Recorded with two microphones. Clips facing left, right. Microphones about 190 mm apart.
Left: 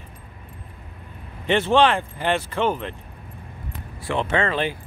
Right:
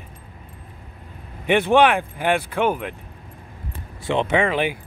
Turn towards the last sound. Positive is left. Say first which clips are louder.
# right 2 dB
turn(degrees=-15)  # may be behind; listen again after turning